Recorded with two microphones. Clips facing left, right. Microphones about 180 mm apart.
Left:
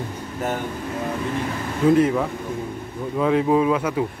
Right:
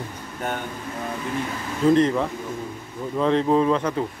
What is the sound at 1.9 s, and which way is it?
Speech, 5° left (ahead or behind).